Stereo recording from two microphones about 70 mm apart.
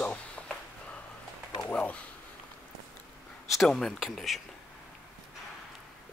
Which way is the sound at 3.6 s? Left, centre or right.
Centre.